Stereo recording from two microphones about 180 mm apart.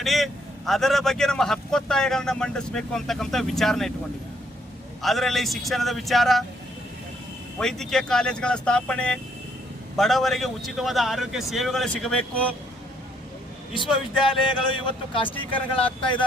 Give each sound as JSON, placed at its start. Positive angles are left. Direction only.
{"t": 0.0, "sound": "a man's voice", "side_deg": 0}
{"t": 5.0, "sound": "a man's voice", "side_deg": 0}
{"t": 7.6, "sound": "a man's voice", "side_deg": 5}
{"t": 13.7, "sound": "speech", "side_deg": 25}